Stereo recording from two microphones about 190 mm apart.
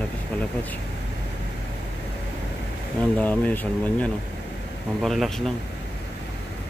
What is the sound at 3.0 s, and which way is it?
Speech, 10° left (ahead or behind).